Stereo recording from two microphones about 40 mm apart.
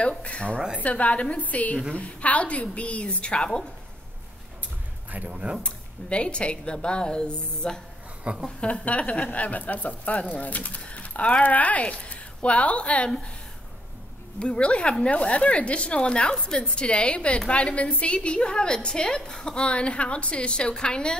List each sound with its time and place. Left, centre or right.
0.2 s speech: left
5.6 s a woman's voice: left
8.2 s speech: right
8.5 s speech: left
14.4 s a woman's voice: left